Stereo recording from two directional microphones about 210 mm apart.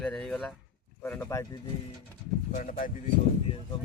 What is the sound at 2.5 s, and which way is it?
Speech, 40° left (ahead or behind).